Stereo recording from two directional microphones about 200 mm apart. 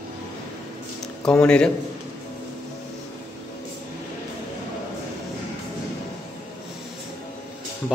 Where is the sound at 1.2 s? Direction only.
5° left (ahead or behind).